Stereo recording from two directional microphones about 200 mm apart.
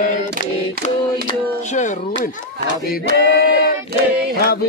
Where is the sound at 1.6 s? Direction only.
35° left (ahead or behind).